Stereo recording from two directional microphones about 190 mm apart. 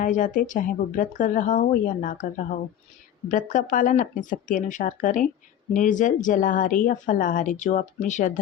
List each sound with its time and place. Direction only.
0.0 s a woman's voice: 40° left (ahead or behind)